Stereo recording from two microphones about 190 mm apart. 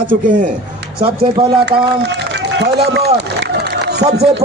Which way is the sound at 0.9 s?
30° right (ahead or behind).